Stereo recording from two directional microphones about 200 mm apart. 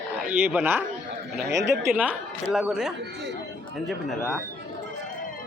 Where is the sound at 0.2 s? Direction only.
10° right (ahead or behind).